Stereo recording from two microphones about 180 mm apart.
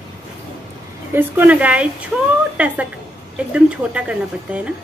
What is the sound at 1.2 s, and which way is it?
Speech, 10° right (ahead or behind).